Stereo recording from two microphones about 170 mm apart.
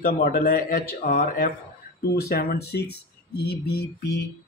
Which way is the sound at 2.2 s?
65° left (ahead or behind).